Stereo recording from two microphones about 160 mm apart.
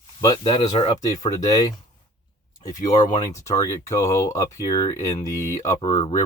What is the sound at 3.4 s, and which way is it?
Speech, 20° left (ahead or behind).